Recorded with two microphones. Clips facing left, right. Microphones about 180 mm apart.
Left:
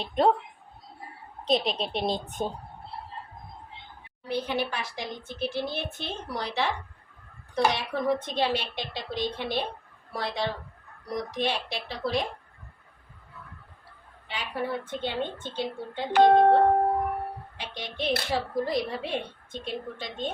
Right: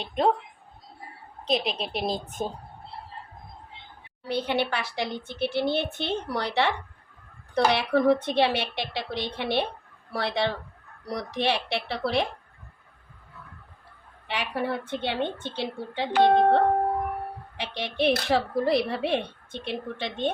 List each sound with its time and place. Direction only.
0.0 s a woman's voice: centre (ahead or behind)
1.5 s a woman's voice: centre (ahead or behind)
4.3 s a child's voice: 70° right (ahead or behind)
14.3 s a child's voice: 70° right (ahead or behind)
17.6 s a child's voice: 70° right (ahead or behind)